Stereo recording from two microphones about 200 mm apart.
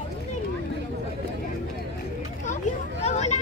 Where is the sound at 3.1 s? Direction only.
35° left (ahead or behind).